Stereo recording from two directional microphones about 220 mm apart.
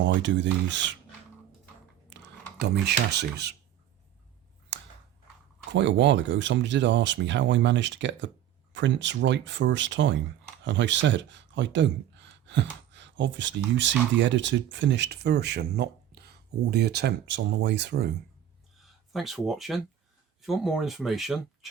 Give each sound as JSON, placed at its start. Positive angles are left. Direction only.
{"t": 0.0, "sound": "speech", "side_deg": -55}
{"t": 2.0, "sound": "speech", "side_deg": -50}
{"t": 4.7, "sound": "a sound", "side_deg": -55}
{"t": 5.7, "sound": "speech", "side_deg": -55}
{"t": 18.8, "sound": "speech", "side_deg": 0}